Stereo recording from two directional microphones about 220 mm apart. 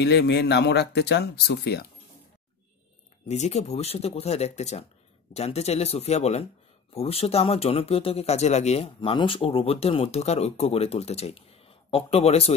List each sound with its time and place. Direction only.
0.0 s speech: 50° left (ahead or behind)
3.3 s speech: 30° left (ahead or behind)